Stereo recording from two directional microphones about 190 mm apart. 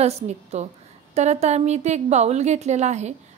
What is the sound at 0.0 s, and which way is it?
A woman's voice, 35° right (ahead or behind).